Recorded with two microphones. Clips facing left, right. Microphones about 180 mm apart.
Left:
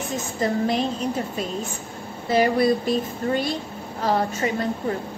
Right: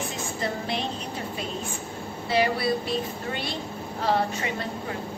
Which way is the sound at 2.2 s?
45° left (ahead or behind).